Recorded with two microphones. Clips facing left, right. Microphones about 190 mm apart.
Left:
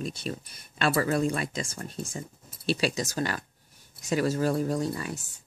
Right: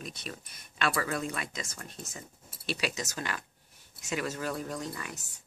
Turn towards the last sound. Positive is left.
turn(degrees=30)  # may be behind; listen again after turning